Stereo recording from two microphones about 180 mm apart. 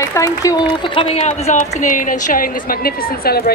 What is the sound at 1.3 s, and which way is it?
A woman's voice, 45° left (ahead or behind).